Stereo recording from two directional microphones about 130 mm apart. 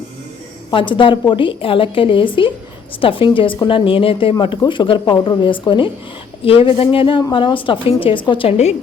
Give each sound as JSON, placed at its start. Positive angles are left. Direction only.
{"t": 0.7, "sound": "a woman's voice", "side_deg": 40}